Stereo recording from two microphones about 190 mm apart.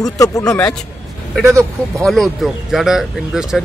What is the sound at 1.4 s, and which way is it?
Speech, 15° right (ahead or behind).